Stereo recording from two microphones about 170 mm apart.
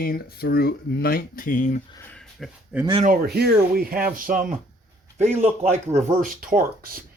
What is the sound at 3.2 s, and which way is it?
Speech, 70° right (ahead or behind).